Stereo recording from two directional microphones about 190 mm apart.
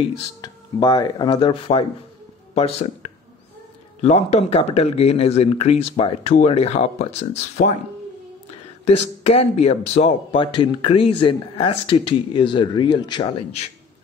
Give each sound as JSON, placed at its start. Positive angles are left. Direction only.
{"t": 0.4, "sound": "speech", "side_deg": 20}
{"t": 8.8, "sound": "speech", "side_deg": 35}